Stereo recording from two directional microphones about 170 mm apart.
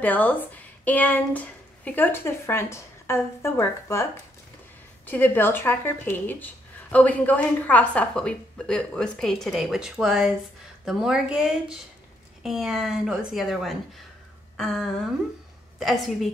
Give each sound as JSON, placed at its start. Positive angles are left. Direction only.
{"t": 0.0, "sound": "a woman's voice", "side_deg": 10}